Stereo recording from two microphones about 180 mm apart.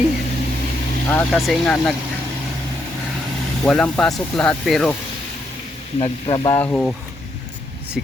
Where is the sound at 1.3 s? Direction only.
Centre (ahead or behind).